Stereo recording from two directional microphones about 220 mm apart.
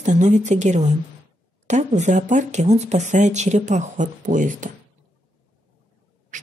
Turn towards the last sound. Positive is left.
turn(degrees=-35)  # may be behind; listen again after turning